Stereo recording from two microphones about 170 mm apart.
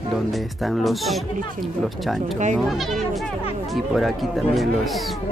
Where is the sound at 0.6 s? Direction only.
Centre (ahead or behind).